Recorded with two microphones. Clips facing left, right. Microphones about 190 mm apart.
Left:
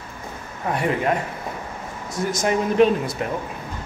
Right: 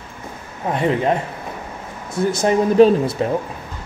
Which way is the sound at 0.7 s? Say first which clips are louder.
Right 4 dB; 25° right (ahead or behind).